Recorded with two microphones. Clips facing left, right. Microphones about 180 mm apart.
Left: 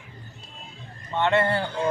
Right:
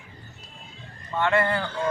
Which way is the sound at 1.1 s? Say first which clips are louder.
Left 1 dB; 25° left (ahead or behind).